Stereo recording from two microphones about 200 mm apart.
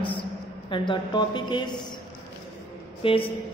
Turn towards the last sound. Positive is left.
turn(degrees=25)  # may be behind; listen again after turning